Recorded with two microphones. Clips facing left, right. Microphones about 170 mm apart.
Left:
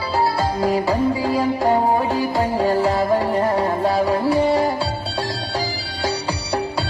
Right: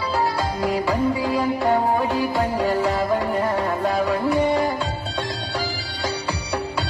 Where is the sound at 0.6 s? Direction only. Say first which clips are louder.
Left 2 dB; 40° left (ahead or behind).